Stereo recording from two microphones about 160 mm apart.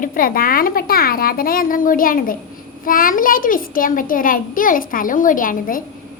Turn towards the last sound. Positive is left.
turn(degrees=60)  # may be behind; listen again after turning